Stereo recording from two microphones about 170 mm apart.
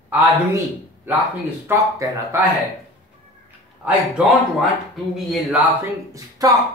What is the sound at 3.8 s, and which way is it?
Speech, 10° right (ahead or behind).